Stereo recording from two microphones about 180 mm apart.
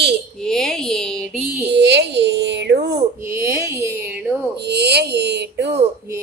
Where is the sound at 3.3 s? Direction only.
15° right (ahead or behind).